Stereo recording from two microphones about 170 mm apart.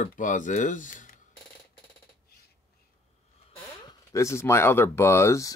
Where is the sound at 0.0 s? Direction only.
50° left (ahead or behind).